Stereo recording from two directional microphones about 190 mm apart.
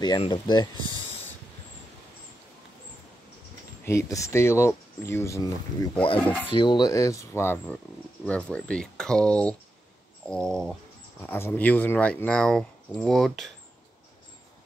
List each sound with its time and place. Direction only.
0.0 s speech: 25° left (ahead or behind)
3.8 s speech: 15° left (ahead or behind)
6.5 s speech: 25° left (ahead or behind); by 13.5 s centre (ahead or behind)